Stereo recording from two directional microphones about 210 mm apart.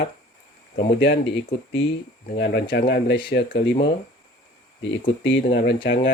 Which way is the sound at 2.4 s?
50° left (ahead or behind).